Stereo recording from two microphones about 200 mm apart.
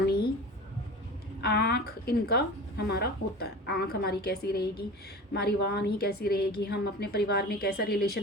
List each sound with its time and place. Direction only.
1.4 s a woman's voice: 55° left (ahead or behind)